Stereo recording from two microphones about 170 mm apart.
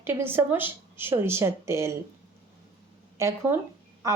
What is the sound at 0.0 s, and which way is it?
Speech, 15° right (ahead or behind).